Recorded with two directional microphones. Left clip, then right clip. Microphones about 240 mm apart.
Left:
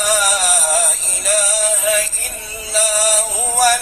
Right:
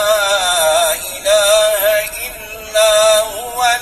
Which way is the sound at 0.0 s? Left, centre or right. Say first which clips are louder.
Right 3 dB; left.